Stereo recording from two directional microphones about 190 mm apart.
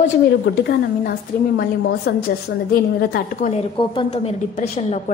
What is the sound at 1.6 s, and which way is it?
A woman's voice, 55° left (ahead or behind).